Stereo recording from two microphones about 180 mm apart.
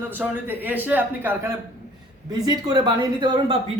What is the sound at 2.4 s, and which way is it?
Speech, 20° right (ahead or behind).